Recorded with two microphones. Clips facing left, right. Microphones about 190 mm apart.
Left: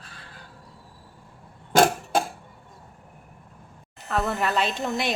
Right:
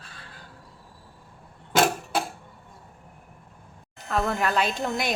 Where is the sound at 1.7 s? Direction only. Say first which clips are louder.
Left 3 dB; 45° left (ahead or behind).